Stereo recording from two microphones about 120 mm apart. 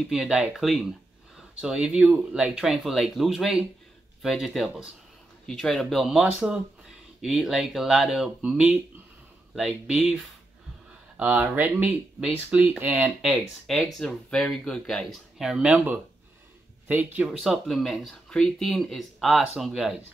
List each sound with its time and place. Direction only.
0.1 s speech: 5° right (ahead or behind)
13.2 s speech: centre (ahead or behind)
16.8 s speech: 15° right (ahead or behind)
17.4 s speech: centre (ahead or behind)